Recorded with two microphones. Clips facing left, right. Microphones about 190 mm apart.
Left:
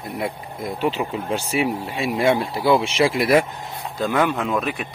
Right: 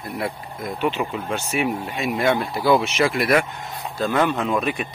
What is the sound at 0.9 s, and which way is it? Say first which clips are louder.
Speech: left 1 dB; 30° left (ahead or behind).